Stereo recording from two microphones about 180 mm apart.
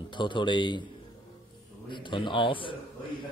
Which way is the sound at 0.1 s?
25° left (ahead or behind).